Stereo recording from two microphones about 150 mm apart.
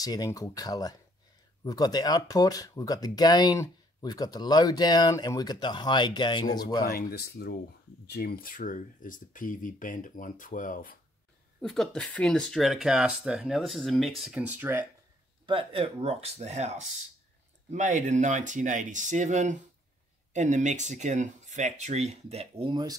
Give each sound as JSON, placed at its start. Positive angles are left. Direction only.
{"t": 0.0, "sound": "speech", "side_deg": 25}
{"t": 6.9, "sound": "speech", "side_deg": 85}
{"t": 11.6, "sound": "speech", "side_deg": 5}
{"t": 15.4, "sound": "speech", "side_deg": -35}